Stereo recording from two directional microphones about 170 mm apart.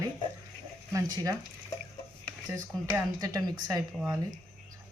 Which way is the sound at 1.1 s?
20° right (ahead or behind).